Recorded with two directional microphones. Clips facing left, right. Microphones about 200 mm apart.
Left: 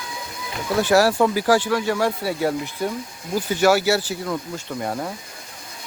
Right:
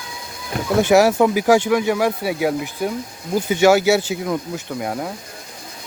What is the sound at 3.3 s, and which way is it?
Speech, 20° right (ahead or behind).